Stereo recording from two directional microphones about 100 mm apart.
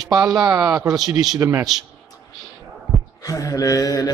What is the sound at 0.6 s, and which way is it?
Speech, 5° right (ahead or behind).